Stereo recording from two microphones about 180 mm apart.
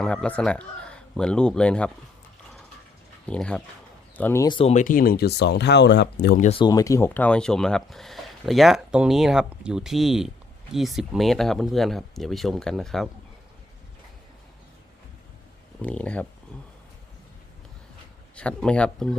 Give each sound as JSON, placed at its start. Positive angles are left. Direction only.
{"t": 0.0, "sound": "speech", "side_deg": 5}
{"t": 3.2, "sound": "speech", "side_deg": 5}
{"t": 4.4, "sound": "speech", "side_deg": 30}
{"t": 4.7, "sound": "speech", "side_deg": 45}
{"t": 6.4, "sound": "speech", "side_deg": 30}
{"t": 15.8, "sound": "speech", "side_deg": 5}
{"t": 18.3, "sound": "speech", "side_deg": 5}